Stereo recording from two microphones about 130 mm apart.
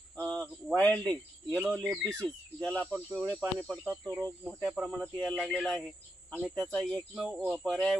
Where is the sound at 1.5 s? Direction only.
5° right (ahead or behind).